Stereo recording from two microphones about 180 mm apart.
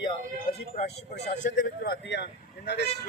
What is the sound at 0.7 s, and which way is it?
Speech, 35° left (ahead or behind).